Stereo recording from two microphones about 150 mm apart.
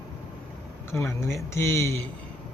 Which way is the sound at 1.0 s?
20° left (ahead or behind).